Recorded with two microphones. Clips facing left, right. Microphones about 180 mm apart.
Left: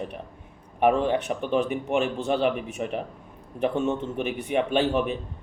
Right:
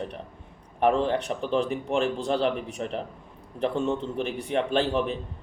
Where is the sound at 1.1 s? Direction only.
35° right (ahead or behind).